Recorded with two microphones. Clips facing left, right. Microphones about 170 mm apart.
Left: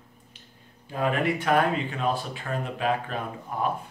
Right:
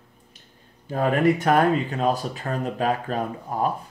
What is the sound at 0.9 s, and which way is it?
Speech, 40° right (ahead or behind).